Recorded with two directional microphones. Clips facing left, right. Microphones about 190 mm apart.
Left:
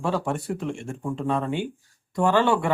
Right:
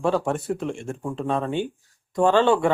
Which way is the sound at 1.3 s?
25° right (ahead or behind).